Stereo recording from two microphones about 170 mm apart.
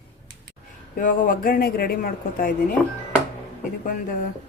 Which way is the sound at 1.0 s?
55° left (ahead or behind).